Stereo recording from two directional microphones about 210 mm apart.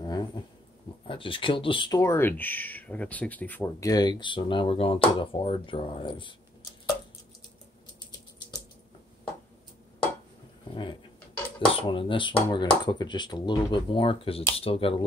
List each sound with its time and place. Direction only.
0.0 s dog: 20° left (ahead or behind)
1.0 s speech: 25° left (ahead or behind)
10.7 s a sound: 25° left (ahead or behind)
11.6 s speech: 25° left (ahead or behind)